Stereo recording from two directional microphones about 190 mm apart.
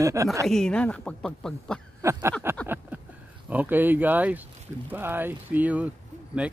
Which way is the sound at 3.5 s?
10° right (ahead or behind).